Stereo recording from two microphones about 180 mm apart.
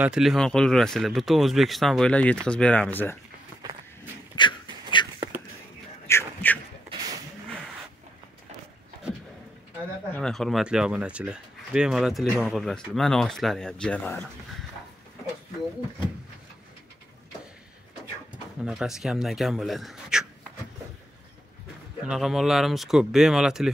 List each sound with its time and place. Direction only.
0.0 s speech: 5° right (ahead or behind)
4.4 s dog: 25° left (ahead or behind)
5.0 s whispering: 25° left (ahead or behind)
6.0 s a sound: 10° left (ahead or behind)
10.1 s speech: 5° left (ahead or behind)
18.6 s speech: 5° right (ahead or behind)
22.0 s speech: 5° right (ahead or behind)